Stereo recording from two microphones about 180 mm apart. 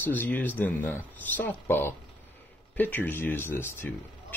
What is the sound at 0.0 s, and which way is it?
Speech, 10° left (ahead or behind).